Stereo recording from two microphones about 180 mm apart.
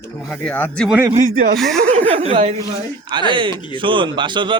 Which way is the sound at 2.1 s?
30° right (ahead or behind).